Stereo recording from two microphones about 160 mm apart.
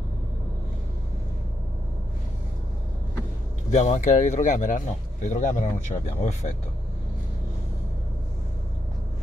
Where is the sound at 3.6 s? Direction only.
45° left (ahead or behind).